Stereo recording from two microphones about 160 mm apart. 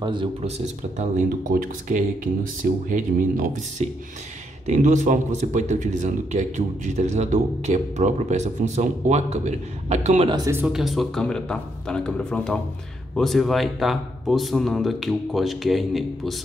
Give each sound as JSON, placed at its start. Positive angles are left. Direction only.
{"t": 0.0, "sound": "speech", "side_deg": -30}
{"t": 1.5, "sound": "a man's voice", "side_deg": -60}
{"t": 10.3, "sound": "speech", "side_deg": -20}
{"t": 10.7, "sound": "a man's voice", "side_deg": 0}